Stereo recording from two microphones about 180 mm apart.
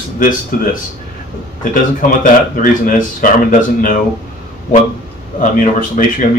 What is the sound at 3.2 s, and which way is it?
Speech, 45° left (ahead or behind).